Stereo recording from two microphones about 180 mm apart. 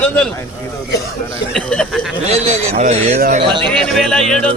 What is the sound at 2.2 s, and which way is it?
A man's voice, 35° right (ahead or behind).